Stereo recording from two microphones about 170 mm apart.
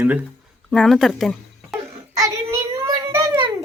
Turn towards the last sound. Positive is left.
turn(degrees=-20)  # may be behind; listen again after turning